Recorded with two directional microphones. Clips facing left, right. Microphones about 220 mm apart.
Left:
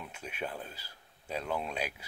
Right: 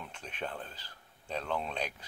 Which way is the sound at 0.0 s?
10° left (ahead or behind).